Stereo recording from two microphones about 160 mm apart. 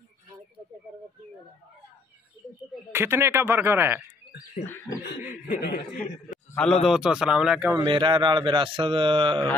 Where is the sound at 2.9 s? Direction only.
15° right (ahead or behind).